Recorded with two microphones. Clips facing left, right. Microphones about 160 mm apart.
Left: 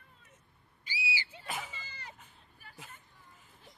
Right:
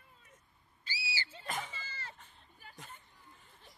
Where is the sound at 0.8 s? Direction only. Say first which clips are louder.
Left 4 dB; 15° left (ahead or behind).